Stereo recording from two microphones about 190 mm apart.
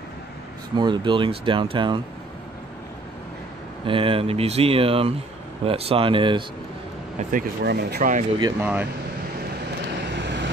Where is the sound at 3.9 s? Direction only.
30° right (ahead or behind).